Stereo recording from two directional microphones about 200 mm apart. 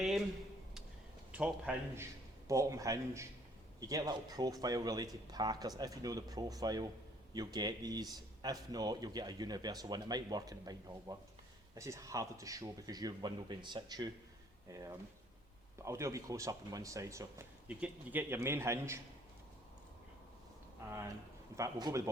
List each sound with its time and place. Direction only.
1.3 s speech: 5° right (ahead or behind)
21.5 s speech: 20° right (ahead or behind)